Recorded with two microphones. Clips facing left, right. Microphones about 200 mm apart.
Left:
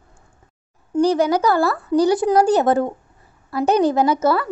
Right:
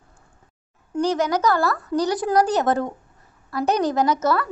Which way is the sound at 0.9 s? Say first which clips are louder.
Left 5 dB; 30° left (ahead or behind).